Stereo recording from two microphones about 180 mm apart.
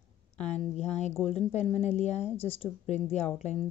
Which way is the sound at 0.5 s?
40° left (ahead or behind).